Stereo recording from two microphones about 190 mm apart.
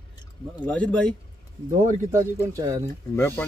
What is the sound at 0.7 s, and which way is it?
Speech, 5° left (ahead or behind).